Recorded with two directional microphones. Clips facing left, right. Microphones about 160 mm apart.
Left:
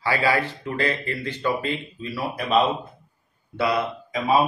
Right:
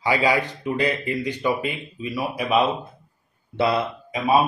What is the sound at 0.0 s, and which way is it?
Speech, 15° right (ahead or behind).